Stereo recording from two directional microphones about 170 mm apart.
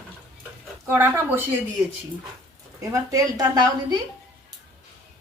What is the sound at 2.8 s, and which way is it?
A woman's voice, 20° right (ahead or behind).